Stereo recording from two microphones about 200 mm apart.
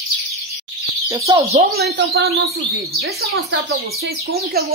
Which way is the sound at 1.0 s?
15° right (ahead or behind).